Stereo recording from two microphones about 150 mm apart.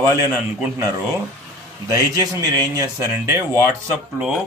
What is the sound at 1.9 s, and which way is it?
A man's voice, 25° right (ahead or behind).